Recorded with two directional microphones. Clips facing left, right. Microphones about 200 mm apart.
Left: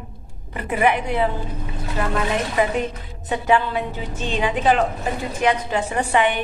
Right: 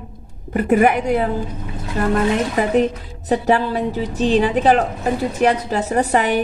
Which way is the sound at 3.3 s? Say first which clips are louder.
Right 3 dB; 35° right (ahead or behind).